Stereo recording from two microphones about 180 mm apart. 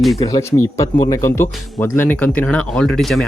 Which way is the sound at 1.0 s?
15° left (ahead or behind).